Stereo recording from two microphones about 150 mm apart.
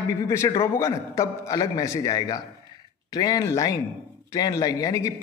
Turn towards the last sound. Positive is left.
turn(degrees=20)  # may be behind; listen again after turning